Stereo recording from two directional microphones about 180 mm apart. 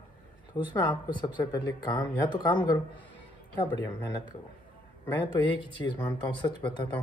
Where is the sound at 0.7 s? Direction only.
25° left (ahead or behind).